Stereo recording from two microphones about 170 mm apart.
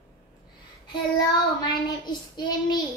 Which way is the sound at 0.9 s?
25° left (ahead or behind).